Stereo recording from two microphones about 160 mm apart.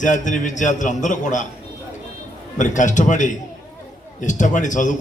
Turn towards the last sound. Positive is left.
turn(degrees=50)  # may be behind; listen again after turning